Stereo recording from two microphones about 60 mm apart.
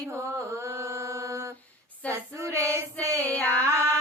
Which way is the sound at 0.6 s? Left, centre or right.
Right.